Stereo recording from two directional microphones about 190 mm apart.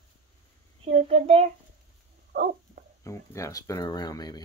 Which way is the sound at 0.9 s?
35° right (ahead or behind).